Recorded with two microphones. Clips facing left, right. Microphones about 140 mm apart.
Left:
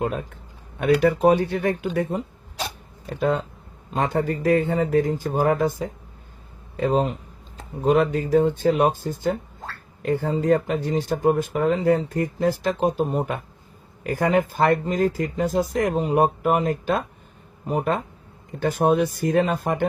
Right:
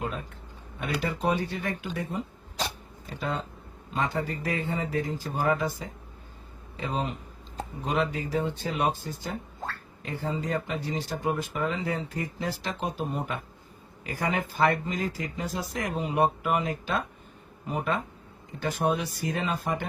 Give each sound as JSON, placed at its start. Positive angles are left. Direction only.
{"t": 0.0, "sound": "speech", "side_deg": 55}